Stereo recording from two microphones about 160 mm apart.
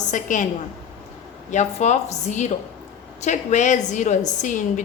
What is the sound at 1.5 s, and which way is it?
A woman's voice, 45° left (ahead or behind).